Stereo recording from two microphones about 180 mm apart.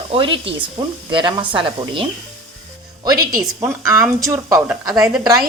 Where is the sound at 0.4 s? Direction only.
30° right (ahead or behind).